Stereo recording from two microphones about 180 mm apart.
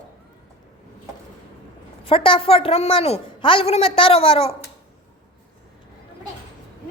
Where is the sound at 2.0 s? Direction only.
30° left (ahead or behind).